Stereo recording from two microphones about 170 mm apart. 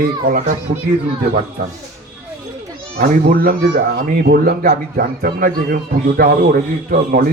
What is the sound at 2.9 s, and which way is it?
Speech, 65° right (ahead or behind).